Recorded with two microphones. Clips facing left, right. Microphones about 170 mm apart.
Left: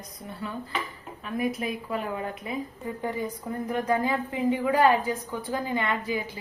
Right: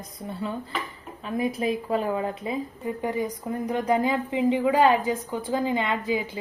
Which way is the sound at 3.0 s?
15° right (ahead or behind).